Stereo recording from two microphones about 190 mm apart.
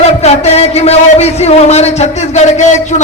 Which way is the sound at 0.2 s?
35° left (ahead or behind).